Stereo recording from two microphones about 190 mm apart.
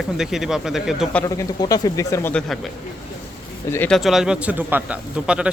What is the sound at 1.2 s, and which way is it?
Speech, 20° left (ahead or behind).